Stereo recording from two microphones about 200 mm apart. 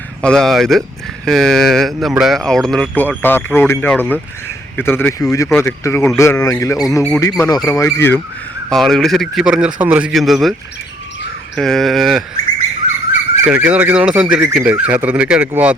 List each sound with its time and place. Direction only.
0.2 s speech: 5° left (ahead or behind)
11.5 s speech: centre (ahead or behind)
13.5 s speech: 5° right (ahead or behind)